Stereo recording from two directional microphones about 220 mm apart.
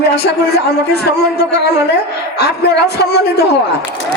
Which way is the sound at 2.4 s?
50° left (ahead or behind).